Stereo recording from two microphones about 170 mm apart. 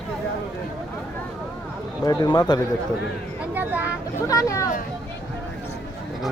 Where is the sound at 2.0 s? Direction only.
25° left (ahead or behind).